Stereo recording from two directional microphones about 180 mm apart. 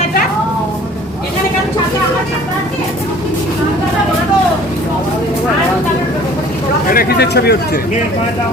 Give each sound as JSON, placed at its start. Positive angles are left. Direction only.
{"t": 6.9, "sound": "speech", "side_deg": 60}